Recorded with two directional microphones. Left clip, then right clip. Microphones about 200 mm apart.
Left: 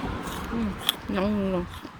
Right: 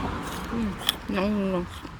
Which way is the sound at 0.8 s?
5° left (ahead or behind).